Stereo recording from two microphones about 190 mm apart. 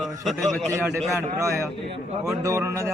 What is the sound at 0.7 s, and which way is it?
Speech, 15° right (ahead or behind).